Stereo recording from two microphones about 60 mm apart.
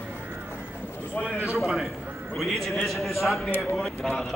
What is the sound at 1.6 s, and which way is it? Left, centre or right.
A man's voice, centre.